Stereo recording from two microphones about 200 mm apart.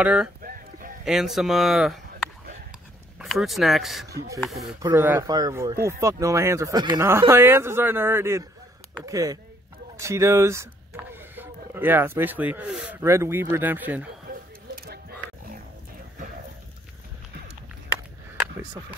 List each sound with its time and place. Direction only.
0.0 s speech: 5° right (ahead or behind)
0.4 s a sound: 45° right (ahead or behind)
1.0 s speech: centre (ahead or behind)
3.2 s speech: centre (ahead or behind)
4.8 s speech: 10° right (ahead or behind)
14.9 s roaring cats: 50° right (ahead or behind)